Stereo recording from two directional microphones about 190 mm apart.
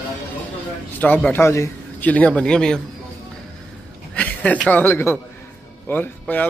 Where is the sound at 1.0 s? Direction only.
10° left (ahead or behind).